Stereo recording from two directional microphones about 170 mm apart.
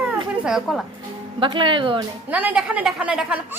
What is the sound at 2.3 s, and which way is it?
A woman's voice, 10° right (ahead or behind).